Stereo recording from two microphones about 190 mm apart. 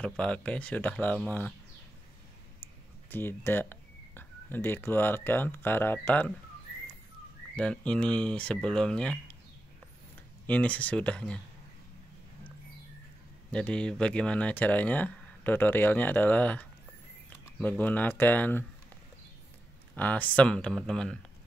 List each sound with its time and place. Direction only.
0.0 s speech: 5° left (ahead or behind)
3.1 s speech: 10° left (ahead or behind)
7.5 s speech: 5° left (ahead or behind)
10.4 s speech: 5° left (ahead or behind)
13.5 s speech: 5° left (ahead or behind)
20.0 s speech: 10° left (ahead or behind)